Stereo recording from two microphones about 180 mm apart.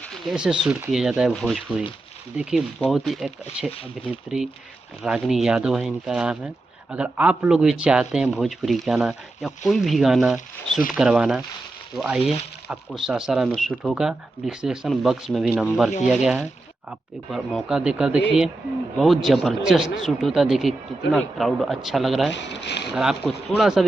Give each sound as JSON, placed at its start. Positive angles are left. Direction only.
{"t": 0.1, "sound": "a man's voice", "side_deg": -5}
{"t": 5.0, "sound": "a man's voice", "side_deg": -5}
{"t": 22.3, "sound": "speech", "side_deg": 80}
{"t": 23.0, "sound": "a man's voice", "side_deg": 0}